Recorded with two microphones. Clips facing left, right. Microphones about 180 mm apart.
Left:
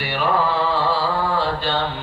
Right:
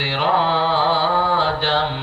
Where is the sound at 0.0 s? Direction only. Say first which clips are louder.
Right 1 dB; 90° right.